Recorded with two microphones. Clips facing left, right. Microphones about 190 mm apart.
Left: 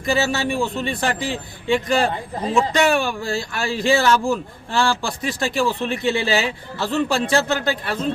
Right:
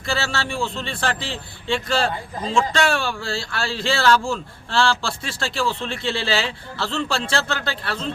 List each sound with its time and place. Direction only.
0.0 s a man's voice: 15° left (ahead or behind)